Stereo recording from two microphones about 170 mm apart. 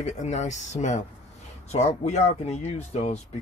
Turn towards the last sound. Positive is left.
turn(degrees=40)  # may be behind; listen again after turning